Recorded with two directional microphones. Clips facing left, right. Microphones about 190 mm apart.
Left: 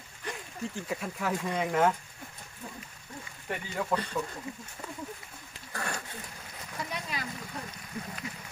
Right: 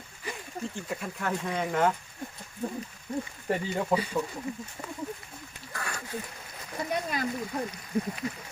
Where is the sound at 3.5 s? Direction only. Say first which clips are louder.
Right 7 dB; 40° right (ahead or behind).